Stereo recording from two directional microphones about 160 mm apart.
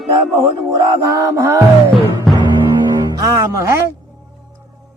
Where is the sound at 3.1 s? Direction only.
20° right (ahead or behind).